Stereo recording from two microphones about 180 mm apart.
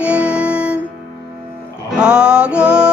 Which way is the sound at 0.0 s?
5° right (ahead or behind).